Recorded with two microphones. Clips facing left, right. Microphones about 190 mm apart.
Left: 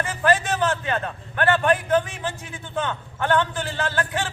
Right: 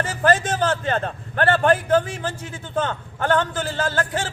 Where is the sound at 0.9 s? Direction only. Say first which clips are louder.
Right 3 dB; 35° right (ahead or behind).